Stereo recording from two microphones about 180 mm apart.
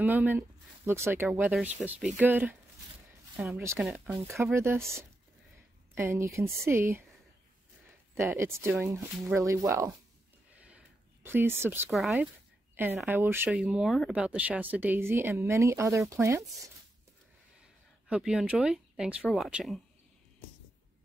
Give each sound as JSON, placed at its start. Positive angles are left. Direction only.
{"t": 0.0, "sound": "speech", "side_deg": -10}
{"t": 3.5, "sound": "speech", "side_deg": -15}
{"t": 3.8, "sound": "speech", "side_deg": 0}
{"t": 4.6, "sound": "speech", "side_deg": -15}
{"t": 8.1, "sound": "speech", "side_deg": -15}
{"t": 10.5, "sound": "a sound", "side_deg": -5}
{"t": 11.2, "sound": "speech", "side_deg": -10}
{"t": 11.9, "sound": "speech", "side_deg": 0}
{"t": 12.7, "sound": "speech", "side_deg": -10}
{"t": 18.0, "sound": "speech", "side_deg": -5}